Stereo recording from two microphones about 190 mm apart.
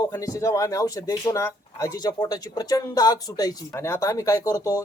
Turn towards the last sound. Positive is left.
turn(degrees=15)  # may be behind; listen again after turning